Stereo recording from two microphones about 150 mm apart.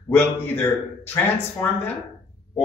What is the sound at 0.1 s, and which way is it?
Speech, 15° left (ahead or behind).